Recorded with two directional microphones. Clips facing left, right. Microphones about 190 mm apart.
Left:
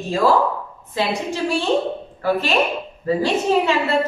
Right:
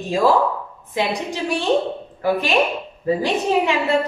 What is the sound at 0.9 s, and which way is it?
Speech, 15° right (ahead or behind).